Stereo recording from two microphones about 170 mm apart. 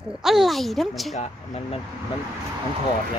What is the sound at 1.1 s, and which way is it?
Speech, 40° left (ahead or behind).